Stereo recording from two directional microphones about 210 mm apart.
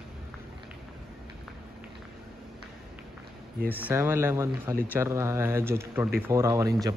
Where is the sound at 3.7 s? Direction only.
10° right (ahead or behind).